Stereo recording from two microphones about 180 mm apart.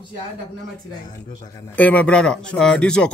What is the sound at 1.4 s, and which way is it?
A man's voice, 15° left (ahead or behind).